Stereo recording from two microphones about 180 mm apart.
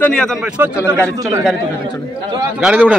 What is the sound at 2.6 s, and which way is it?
Speech, 5° right (ahead or behind).